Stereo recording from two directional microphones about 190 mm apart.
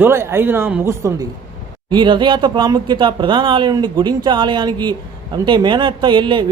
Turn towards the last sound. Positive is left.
turn(degrees=-25)  # may be behind; listen again after turning